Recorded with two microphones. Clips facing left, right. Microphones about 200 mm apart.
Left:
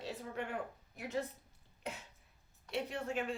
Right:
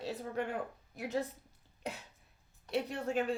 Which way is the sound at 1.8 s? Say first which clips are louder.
Right 3 dB; 35° right (ahead or behind).